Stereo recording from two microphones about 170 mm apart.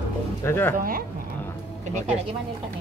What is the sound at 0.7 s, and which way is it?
Speech, 55° right (ahead or behind).